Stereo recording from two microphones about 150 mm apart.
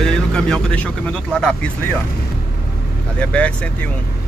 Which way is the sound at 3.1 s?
10° left (ahead or behind).